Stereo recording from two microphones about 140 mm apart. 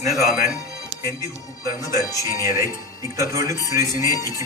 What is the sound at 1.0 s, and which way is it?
Speech, 25° right (ahead or behind).